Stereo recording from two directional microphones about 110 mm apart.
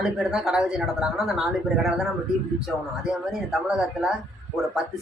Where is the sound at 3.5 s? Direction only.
5° right (ahead or behind).